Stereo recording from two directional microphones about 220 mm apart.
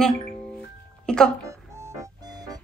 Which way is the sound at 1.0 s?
5° left (ahead or behind).